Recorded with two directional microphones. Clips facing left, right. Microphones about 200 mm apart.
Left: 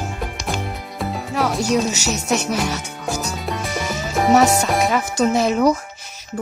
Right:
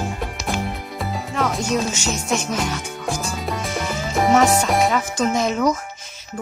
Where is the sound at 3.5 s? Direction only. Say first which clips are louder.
Even; centre (ahead or behind).